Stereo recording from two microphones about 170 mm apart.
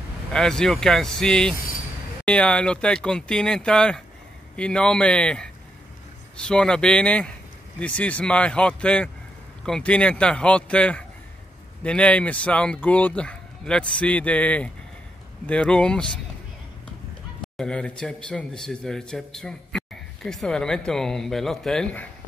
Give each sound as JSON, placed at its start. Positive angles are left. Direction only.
{"t": 0.3, "sound": "speech", "side_deg": 5}
{"t": 17.6, "sound": "speech", "side_deg": 5}